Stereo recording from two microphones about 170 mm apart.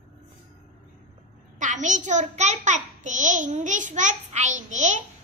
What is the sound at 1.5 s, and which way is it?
A child's voice, 45° right (ahead or behind).